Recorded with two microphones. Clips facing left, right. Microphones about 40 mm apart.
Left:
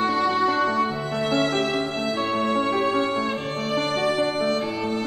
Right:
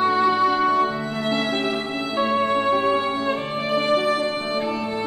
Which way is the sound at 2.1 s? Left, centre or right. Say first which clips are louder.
Right 4 dB; centre.